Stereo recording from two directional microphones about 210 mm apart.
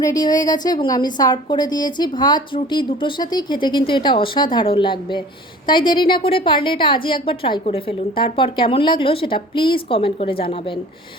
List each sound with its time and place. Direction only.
0.0 s a woman's voice: 15° left (ahead or behind)